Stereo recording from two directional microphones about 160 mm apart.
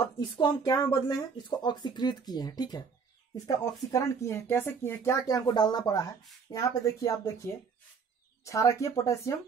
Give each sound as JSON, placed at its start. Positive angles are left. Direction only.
{"t": 0.4, "sound": "speech", "side_deg": 25}